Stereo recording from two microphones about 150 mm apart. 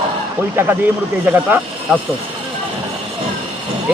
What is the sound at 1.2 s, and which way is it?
Speech, 10° right (ahead or behind).